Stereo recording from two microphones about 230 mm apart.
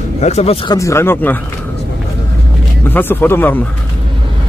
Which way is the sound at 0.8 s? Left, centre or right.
Centre.